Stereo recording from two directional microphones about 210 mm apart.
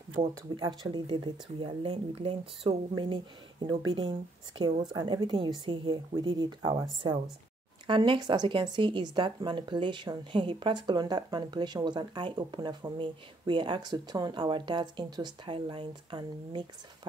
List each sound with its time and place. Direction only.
0.3 s speech: 20° right (ahead or behind)